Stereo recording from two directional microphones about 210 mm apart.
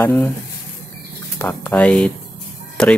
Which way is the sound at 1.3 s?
10° left (ahead or behind).